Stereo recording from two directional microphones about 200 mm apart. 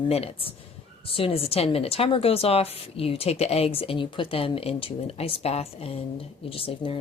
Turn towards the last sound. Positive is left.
turn(degrees=25)  # may be behind; listen again after turning